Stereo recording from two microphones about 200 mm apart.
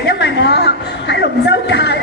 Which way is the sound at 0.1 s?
55° left (ahead or behind).